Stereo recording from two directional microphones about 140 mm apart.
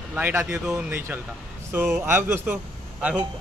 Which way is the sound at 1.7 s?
15° right (ahead or behind).